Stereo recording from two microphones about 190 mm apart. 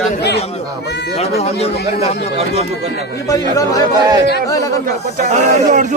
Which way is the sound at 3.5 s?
15° left (ahead or behind).